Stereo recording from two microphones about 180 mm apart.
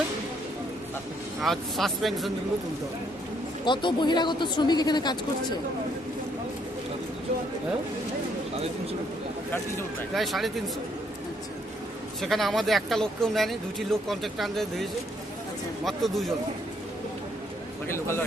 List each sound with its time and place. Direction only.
1.4 s speech: centre (ahead or behind)
3.7 s speech: 25° left (ahead or behind)
8.5 s speech: 35° right (ahead or behind)
10.2 s speech: centre (ahead or behind)
12.2 s speech: centre (ahead or behind)
17.8 s a man's voice: 15° left (ahead or behind)